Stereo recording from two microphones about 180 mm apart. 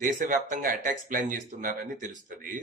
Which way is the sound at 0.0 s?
45° right (ahead or behind).